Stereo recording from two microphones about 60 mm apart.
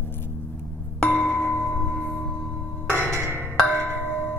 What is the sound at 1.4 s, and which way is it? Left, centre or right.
Music, left.